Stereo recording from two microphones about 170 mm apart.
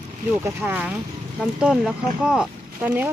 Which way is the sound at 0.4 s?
15° right (ahead or behind).